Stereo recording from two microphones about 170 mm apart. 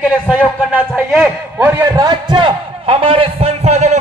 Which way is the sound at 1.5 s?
15° right (ahead or behind).